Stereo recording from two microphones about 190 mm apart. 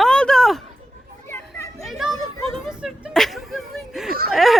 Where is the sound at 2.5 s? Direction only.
5° right (ahead or behind).